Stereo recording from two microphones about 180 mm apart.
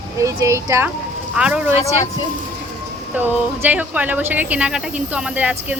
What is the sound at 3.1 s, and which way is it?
Speech, 10° right (ahead or behind).